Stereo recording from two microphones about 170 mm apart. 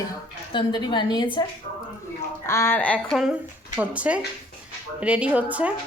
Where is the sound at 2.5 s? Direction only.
15° left (ahead or behind).